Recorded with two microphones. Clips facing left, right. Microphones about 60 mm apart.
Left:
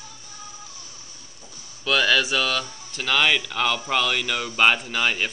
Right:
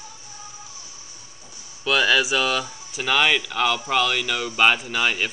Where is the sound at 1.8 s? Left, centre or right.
Centre.